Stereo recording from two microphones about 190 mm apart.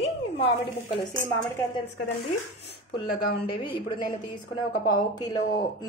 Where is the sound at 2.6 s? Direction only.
60° left (ahead or behind).